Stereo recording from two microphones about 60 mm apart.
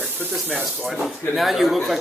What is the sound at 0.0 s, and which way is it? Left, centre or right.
Speech, right.